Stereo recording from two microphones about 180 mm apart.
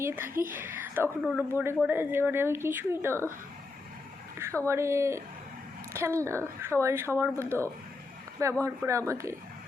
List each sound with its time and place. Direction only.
0.0 s speech: 15° right (ahead or behind)
4.6 s speech: 15° right (ahead or behind)